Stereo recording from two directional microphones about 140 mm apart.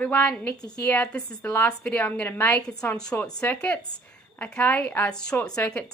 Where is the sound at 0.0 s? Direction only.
10° left (ahead or behind).